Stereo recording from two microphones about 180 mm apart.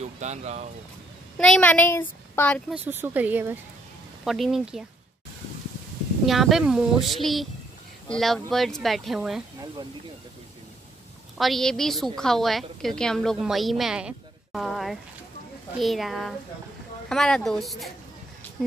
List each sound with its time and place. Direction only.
0.2 s speech: 40° right (ahead or behind)
1.4 s a woman's voice: 5° left (ahead or behind)
2.7 s a woman's voice: 10° right (ahead or behind)
6.2 s a woman's voice: centre (ahead or behind)
11.3 s a woman's voice: centre (ahead or behind)